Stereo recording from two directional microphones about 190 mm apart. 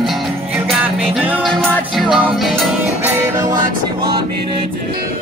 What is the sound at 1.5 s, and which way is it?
Music, 5° left (ahead or behind).